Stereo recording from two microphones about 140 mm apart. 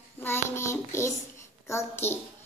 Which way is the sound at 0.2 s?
20° left (ahead or behind).